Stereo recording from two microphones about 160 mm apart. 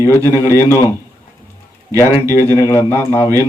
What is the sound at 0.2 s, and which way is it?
Speech, 20° right (ahead or behind).